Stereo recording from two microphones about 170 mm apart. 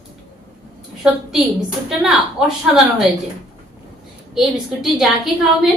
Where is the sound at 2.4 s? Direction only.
5° right (ahead or behind).